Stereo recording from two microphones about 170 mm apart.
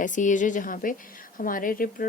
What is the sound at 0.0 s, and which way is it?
Speech, 50° left (ahead or behind).